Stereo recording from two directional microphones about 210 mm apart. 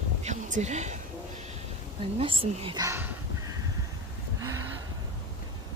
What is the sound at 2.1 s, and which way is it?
Speech, 25° right (ahead or behind).